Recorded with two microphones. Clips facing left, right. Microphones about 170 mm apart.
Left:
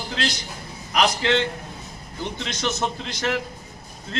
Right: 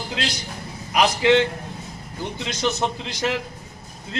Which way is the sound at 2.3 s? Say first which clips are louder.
Right 4 dB; 15° right (ahead or behind).